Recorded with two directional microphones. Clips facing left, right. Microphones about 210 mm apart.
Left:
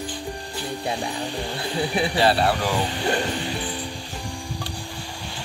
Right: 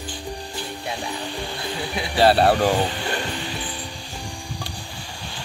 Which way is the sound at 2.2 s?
50° right (ahead or behind).